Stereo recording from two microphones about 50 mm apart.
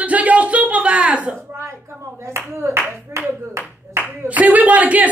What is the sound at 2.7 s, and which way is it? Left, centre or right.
Speech, right.